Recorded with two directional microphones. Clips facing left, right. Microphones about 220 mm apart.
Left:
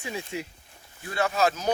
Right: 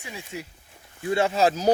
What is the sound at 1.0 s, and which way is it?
Speech, 25° right (ahead or behind).